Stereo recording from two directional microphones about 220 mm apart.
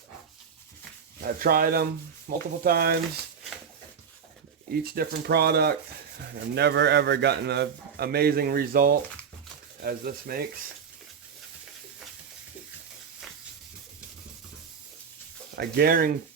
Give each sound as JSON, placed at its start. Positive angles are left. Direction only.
{"t": 1.2, "sound": "a man's voice", "side_deg": -40}
{"t": 4.7, "sound": "a man's voice", "side_deg": -45}
{"t": 15.5, "sound": "a man's voice", "side_deg": -45}